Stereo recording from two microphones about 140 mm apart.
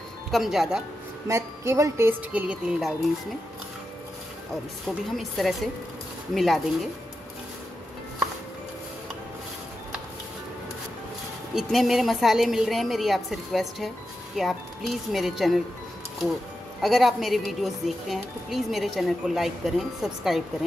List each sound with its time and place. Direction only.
0.3 s a woman's voice: centre (ahead or behind)
1.2 s a woman's voice: 20° right (ahead or behind)
4.8 s a woman's voice: centre (ahead or behind)
11.5 s a woman's voice: centre (ahead or behind)
16.8 s a woman's voice: centre (ahead or behind)